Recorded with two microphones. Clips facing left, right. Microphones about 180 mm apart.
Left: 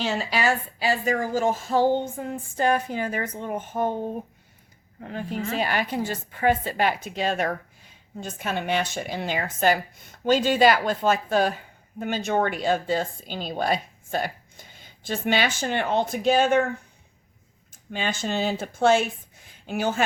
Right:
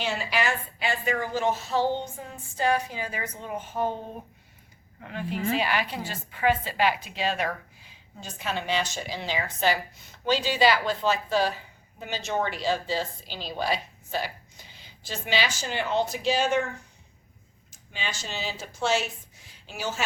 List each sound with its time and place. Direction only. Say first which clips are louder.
0.0 s a woman's voice: left 3 dB; 40° left (ahead or behind)
4.9 s a woman's voice: left 2 dB; 40° left (ahead or behind); by 20.1 s 55° left (ahead or behind)